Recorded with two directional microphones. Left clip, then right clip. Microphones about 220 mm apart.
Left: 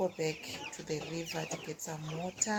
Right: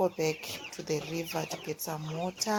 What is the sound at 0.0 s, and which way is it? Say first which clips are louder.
Speech: right 5 dB; 25° right (ahead or behind).